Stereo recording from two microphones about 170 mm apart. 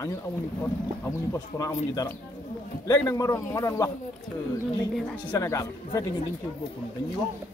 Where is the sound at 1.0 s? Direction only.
15° left (ahead or behind).